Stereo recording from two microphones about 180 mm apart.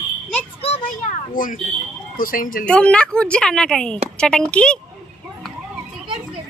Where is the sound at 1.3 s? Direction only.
50° left (ahead or behind).